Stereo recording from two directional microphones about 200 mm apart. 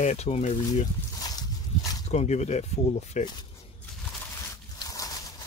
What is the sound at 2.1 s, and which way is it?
Speech, 35° left (ahead or behind).